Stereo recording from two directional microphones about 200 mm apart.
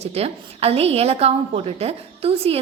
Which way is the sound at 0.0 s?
30° right (ahead or behind).